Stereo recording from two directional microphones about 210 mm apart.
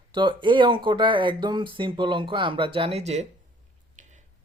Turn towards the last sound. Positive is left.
turn(degrees=-35)  # may be behind; listen again after turning